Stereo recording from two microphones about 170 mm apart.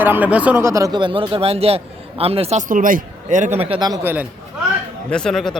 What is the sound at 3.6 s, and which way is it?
Speech, 30° right (ahead or behind).